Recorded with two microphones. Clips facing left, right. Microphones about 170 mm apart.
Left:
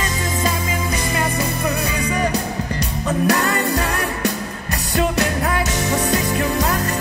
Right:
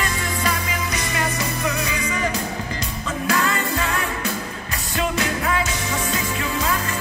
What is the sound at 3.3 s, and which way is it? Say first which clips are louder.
Music: even; 40° left (ahead or behind).